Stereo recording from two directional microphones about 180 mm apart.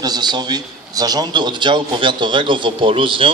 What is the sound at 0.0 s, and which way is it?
A man's voice, 20° right (ahead or behind).